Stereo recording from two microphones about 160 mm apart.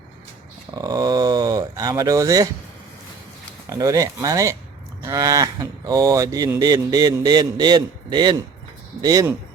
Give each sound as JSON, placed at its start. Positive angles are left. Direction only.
{"t": 0.7, "sound": "speech", "side_deg": -25}
{"t": 3.7, "sound": "speech", "side_deg": -20}